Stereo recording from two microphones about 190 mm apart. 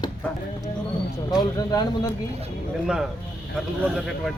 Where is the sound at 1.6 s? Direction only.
20° left (ahead or behind).